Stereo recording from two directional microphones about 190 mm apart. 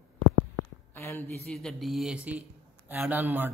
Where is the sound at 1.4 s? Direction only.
Centre (ahead or behind).